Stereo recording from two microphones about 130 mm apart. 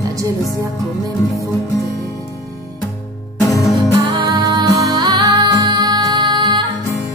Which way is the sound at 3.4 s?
25° left (ahead or behind).